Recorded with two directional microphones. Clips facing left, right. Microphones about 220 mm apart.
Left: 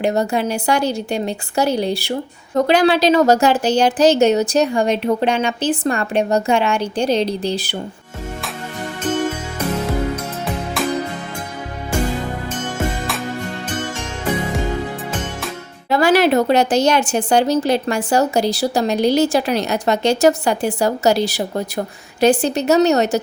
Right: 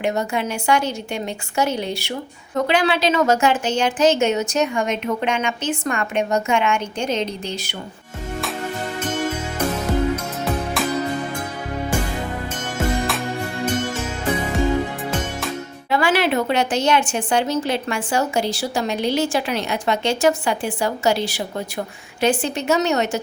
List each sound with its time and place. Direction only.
0.0 s a woman's voice: 35° left (ahead or behind)
15.9 s a woman's voice: 40° left (ahead or behind)